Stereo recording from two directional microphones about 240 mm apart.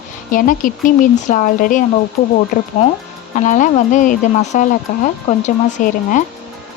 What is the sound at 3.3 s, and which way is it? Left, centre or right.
Speech, left.